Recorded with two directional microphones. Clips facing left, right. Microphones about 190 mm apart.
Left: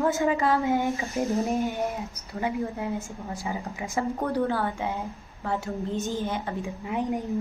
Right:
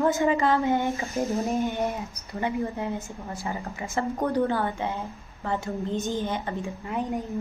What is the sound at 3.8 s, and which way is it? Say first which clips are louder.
Speech: even; 15° left (ahead or behind).